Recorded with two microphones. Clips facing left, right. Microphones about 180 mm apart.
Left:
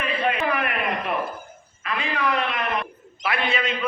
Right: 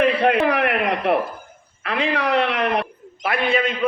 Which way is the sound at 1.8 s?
70° right (ahead or behind).